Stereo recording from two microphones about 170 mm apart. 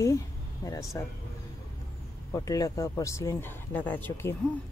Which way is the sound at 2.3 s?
20° left (ahead or behind).